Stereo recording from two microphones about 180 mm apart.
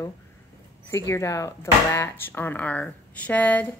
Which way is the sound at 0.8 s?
15° left (ahead or behind).